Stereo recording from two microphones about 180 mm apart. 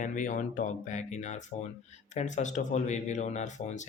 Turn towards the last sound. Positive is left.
turn(degrees=40)  # may be behind; listen again after turning